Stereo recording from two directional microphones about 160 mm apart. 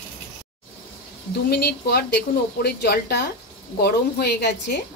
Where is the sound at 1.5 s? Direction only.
90° left.